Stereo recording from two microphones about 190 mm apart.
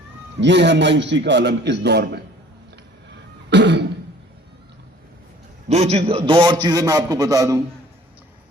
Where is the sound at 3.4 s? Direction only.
65° right (ahead or behind).